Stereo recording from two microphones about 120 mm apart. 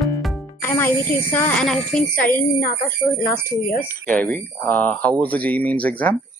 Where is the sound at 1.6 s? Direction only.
5° left (ahead or behind).